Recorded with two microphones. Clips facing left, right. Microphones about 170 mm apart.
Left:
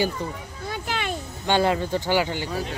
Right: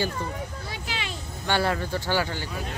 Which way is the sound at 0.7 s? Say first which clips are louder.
Left 6 dB; 50° left (ahead or behind).